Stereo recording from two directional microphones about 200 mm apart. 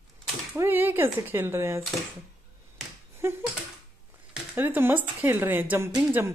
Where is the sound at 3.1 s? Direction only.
15° right (ahead or behind).